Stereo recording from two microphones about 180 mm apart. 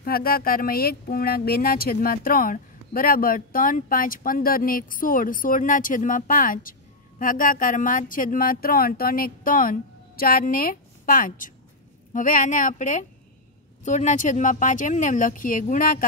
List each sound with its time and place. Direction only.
0.0 s speech: 55° left (ahead or behind)